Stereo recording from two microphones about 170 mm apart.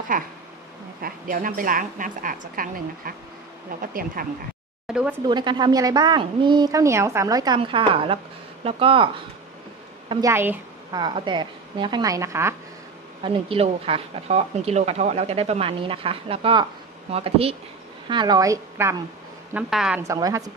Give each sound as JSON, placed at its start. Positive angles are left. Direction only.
{"t": 0.1, "sound": "a woman's voice", "side_deg": -55}
{"t": 4.8, "sound": "speech", "side_deg": -5}
{"t": 5.3, "sound": "a woman's voice", "side_deg": -25}
{"t": 10.0, "sound": "a woman's voice", "side_deg": -15}
{"t": 10.9, "sound": "a woman's voice", "side_deg": -25}
{"t": 13.2, "sound": "a woman's voice", "side_deg": -30}
{"t": 19.5, "sound": "speech", "side_deg": -5}
{"t": 20.0, "sound": "a woman's voice", "side_deg": -20}